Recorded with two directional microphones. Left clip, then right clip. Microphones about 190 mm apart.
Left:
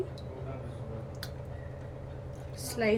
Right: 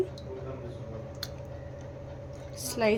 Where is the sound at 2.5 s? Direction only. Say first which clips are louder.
Right 2 dB; 25° right (ahead or behind).